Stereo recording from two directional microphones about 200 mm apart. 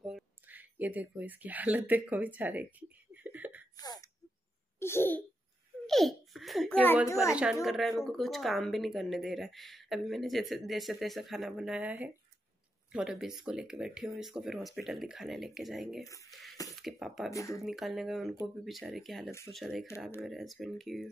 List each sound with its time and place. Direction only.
0.0 s speech: 5° right (ahead or behind)
3.2 s a sound: 10° right (ahead or behind)
3.7 s throat clearing: 20° left (ahead or behind)
4.7 s babbling: 10° left (ahead or behind)
5.9 s babbling: centre (ahead or behind)
7.6 s speech: centre (ahead or behind)
16.3 s a sound: centre (ahead or behind)
16.8 s speech: centre (ahead or behind)
17.3 s speech: 15° left (ahead or behind)
17.6 s speech: centre (ahead or behind)